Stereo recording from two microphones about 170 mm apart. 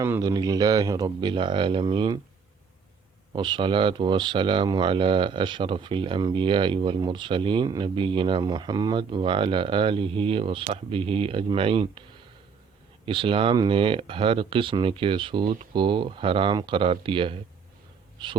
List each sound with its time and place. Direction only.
0.0 s speech: 20° right (ahead or behind)
3.3 s speech: 25° right (ahead or behind)
13.1 s speech: 30° right (ahead or behind)